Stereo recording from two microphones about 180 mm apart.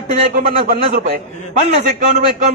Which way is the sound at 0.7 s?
45° right (ahead or behind).